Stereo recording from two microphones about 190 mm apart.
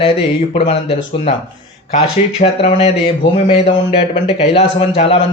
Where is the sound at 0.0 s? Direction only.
30° left (ahead or behind).